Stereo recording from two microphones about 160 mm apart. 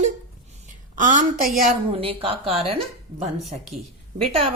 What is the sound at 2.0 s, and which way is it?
Speech, 35° right (ahead or behind).